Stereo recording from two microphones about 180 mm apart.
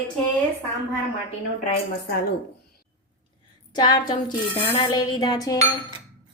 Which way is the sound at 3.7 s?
25° left (ahead or behind).